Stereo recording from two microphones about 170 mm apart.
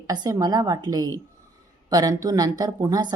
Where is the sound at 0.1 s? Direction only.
20° right (ahead or behind).